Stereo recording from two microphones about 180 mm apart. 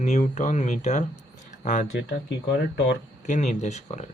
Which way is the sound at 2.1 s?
75° left (ahead or behind).